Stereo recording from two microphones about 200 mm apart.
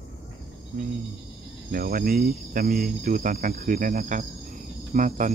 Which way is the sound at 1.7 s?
45° right (ahead or behind).